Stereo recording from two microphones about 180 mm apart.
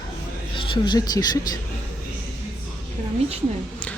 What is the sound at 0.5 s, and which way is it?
Speech, 25° left (ahead or behind).